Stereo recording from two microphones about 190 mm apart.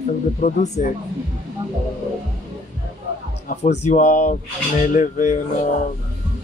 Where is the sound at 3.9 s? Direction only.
40° left (ahead or behind).